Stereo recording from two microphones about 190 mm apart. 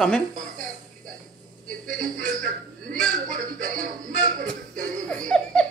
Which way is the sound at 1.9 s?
45° right (ahead or behind).